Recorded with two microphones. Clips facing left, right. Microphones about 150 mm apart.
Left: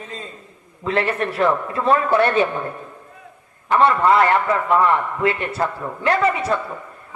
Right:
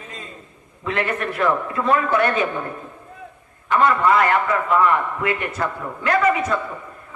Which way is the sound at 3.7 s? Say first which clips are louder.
Left 2 dB; 30° left (ahead or behind).